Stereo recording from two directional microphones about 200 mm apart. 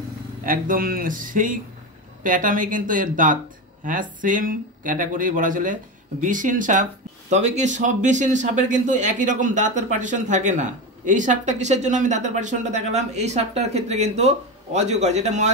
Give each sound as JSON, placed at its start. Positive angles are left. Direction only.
{"t": 0.4, "sound": "a man's voice", "side_deg": -45}